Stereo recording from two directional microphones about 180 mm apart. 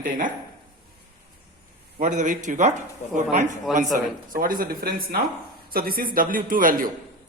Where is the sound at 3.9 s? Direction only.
50° right (ahead or behind).